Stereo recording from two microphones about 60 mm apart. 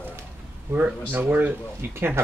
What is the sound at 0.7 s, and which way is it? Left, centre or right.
Speech, right.